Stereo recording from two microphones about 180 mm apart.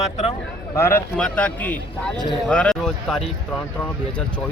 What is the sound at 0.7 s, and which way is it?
A man's voice, 15° left (ahead or behind).